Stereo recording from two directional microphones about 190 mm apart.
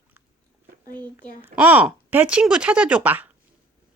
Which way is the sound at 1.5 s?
10° right (ahead or behind).